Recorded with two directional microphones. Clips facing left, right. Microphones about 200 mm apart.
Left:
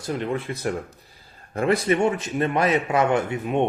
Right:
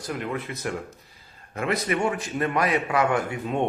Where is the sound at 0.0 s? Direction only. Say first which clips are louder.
Left 4 dB; 25° left (ahead or behind).